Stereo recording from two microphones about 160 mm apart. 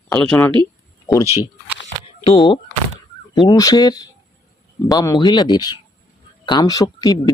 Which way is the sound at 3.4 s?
25° left (ahead or behind).